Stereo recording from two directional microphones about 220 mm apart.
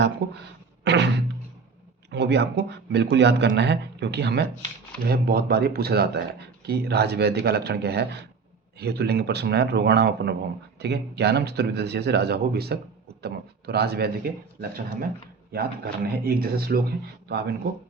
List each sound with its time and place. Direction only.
0.9 s speech: 50° right (ahead or behind)